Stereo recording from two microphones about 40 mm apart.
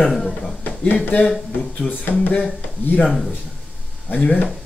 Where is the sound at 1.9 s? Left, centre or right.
Left.